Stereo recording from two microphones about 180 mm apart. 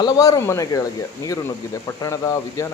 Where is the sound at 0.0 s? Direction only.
20° left (ahead or behind).